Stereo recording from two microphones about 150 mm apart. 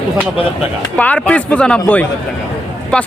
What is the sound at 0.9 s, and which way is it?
A man's voice, 10° left (ahead or behind).